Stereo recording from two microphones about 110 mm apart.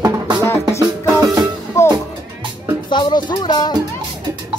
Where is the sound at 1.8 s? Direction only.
25° left (ahead or behind).